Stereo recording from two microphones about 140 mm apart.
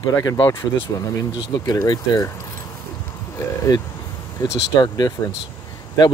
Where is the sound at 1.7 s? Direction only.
25° left (ahead or behind).